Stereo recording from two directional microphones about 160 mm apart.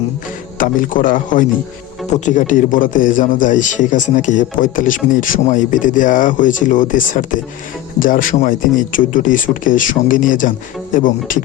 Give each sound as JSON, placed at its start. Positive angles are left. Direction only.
{"t": 0.6, "sound": "a man's voice", "side_deg": 55}